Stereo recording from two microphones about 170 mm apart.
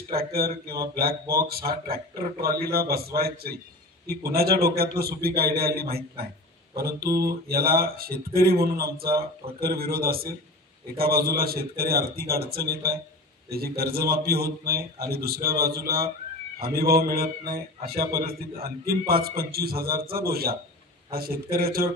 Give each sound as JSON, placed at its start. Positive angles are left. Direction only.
{"t": 0.1, "sound": "speech", "side_deg": -65}